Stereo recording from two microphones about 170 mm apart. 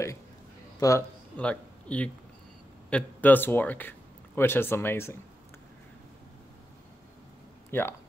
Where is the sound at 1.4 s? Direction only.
5° left (ahead or behind).